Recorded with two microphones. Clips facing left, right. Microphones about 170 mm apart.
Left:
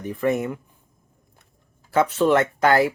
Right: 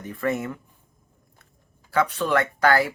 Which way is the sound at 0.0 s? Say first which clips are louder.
Left 4 dB; 20° left (ahead or behind).